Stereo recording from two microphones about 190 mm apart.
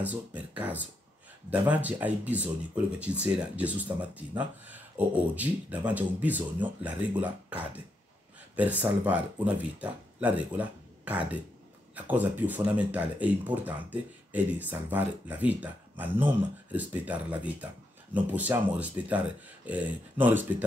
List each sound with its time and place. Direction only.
0.0 s speech: 10° right (ahead or behind)